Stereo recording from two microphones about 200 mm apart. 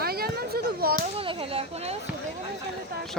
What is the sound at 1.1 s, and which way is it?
Speech, 30° right (ahead or behind).